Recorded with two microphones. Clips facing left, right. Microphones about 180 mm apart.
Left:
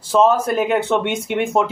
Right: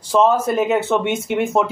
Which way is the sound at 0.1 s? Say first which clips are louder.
Even; centre (ahead or behind).